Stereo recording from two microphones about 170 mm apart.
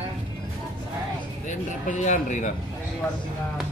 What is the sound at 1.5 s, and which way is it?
Speech, 45° left (ahead or behind).